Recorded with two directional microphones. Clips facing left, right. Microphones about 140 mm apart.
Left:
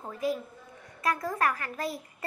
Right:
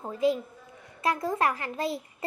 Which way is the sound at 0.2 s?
25° right (ahead or behind).